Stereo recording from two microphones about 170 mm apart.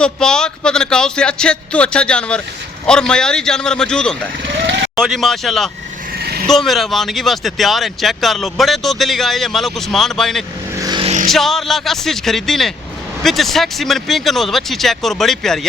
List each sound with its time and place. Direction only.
0.0 s speech: 5° left (ahead or behind)
4.4 s speech: 90° right
4.9 s speech: centre (ahead or behind)
6.1 s vehicle: 65° right (ahead or behind)
6.5 s speech: centre (ahead or behind)
10.8 s vehicle: 20° right (ahead or behind)
11.0 s vehicle: 40° right (ahead or behind)
11.3 s speech: centre (ahead or behind)